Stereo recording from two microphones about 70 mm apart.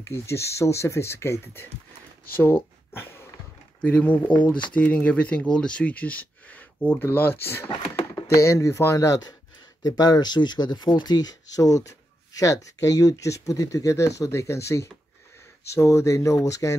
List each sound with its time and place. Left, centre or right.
0.0 s speech: left
2.4 s a sound: left
3.8 s speech: left
8.4 s speech: left
9.8 s speech: left